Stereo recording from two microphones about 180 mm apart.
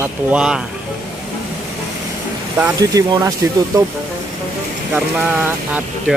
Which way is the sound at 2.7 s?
25° right (ahead or behind).